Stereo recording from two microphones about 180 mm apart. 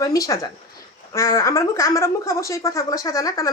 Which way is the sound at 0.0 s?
20° left (ahead or behind).